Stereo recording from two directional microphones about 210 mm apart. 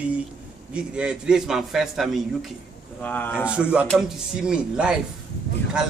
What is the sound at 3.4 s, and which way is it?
A man's voice, 5° right (ahead or behind).